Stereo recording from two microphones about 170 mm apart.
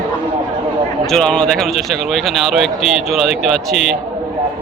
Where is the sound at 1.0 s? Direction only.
5° left (ahead or behind).